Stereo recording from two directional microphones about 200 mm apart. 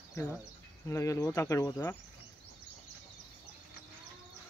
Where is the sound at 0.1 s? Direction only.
15° left (ahead or behind).